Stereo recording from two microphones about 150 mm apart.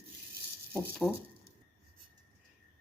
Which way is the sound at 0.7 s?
15° left (ahead or behind).